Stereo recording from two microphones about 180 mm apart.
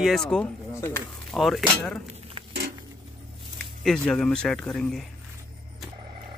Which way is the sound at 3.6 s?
5° left (ahead or behind).